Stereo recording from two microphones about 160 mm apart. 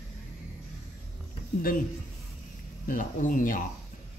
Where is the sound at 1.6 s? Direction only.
60° left (ahead or behind).